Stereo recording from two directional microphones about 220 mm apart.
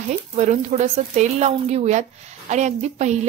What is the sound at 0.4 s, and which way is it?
A woman's voice, 30° right (ahead or behind).